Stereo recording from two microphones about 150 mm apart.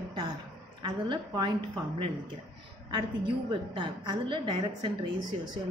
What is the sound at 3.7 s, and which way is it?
A woman's voice, 30° right (ahead or behind).